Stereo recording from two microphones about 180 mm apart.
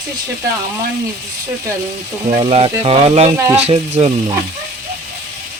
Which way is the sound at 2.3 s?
35° right (ahead or behind).